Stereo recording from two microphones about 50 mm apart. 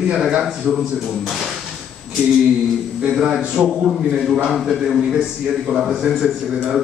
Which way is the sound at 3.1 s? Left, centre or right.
Centre.